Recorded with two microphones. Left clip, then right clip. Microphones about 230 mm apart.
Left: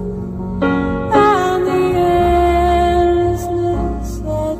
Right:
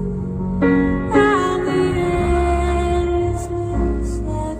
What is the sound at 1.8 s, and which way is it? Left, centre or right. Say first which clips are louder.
Music: left 5 dB; right.